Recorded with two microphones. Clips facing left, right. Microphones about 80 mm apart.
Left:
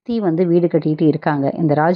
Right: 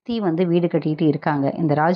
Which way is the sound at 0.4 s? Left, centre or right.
Left.